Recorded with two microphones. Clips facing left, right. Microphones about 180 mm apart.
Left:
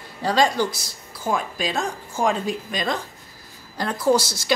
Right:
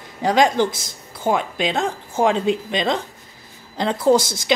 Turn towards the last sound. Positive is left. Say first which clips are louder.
# right 4 dB
turn(degrees=-20)  # may be behind; listen again after turning